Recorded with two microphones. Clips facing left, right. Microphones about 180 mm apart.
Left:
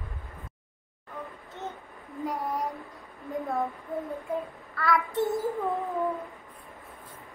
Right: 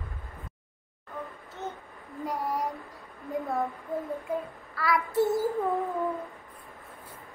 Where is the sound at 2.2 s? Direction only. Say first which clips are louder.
Even; centre (ahead or behind).